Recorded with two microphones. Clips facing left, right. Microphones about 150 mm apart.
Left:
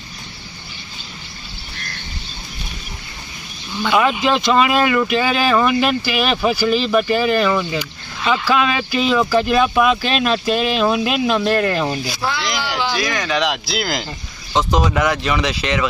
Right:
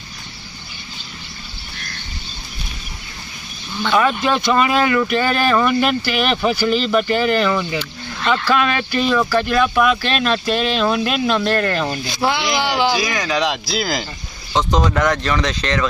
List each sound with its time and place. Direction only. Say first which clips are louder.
3.8 s speech: left 1 dB; 10° left (ahead or behind)
12.9 s speech: right 1 dB; centre (ahead or behind)